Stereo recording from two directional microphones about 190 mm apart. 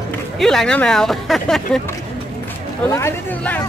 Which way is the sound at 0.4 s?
Centre (ahead or behind).